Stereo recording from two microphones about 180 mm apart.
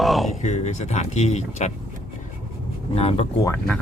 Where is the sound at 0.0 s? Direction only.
Centre (ahead or behind).